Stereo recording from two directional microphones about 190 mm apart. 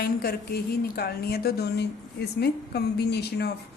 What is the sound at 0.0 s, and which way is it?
A man's voice, 55° left (ahead or behind).